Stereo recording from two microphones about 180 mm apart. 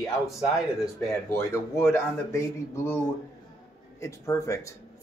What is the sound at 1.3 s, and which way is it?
Speech, 15° left (ahead or behind).